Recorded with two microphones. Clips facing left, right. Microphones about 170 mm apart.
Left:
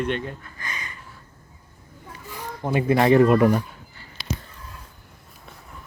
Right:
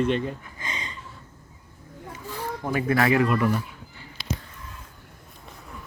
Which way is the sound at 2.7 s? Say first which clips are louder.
Left 5 dB; 25° left (ahead or behind).